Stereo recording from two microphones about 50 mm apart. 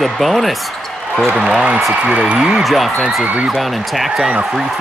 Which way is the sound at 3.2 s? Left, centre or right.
Right.